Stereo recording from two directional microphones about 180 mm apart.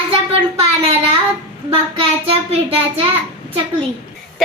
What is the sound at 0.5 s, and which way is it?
Child singing, 35° right (ahead or behind).